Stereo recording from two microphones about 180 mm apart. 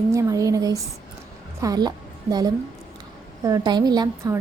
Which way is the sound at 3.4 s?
20° right (ahead or behind).